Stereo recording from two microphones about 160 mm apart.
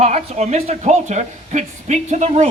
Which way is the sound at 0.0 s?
45° right (ahead or behind).